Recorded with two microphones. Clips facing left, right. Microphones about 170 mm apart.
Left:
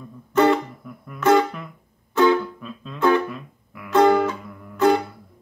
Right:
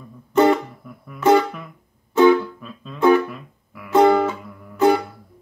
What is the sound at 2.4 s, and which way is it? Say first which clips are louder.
Music: left 1 dB; centre (ahead or behind).